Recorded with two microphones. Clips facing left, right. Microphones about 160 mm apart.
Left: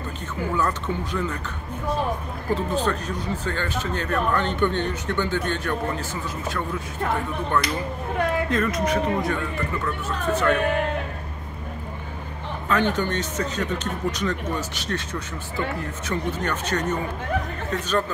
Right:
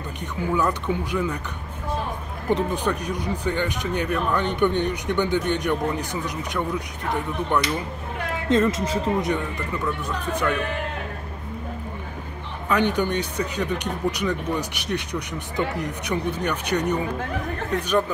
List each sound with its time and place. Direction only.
0.6 s speech: 10° right (ahead or behind)
2.5 s speech: 15° right (ahead or behind)
10.0 s speech: 10° right (ahead or behind)
12.6 s speech: 15° right (ahead or behind)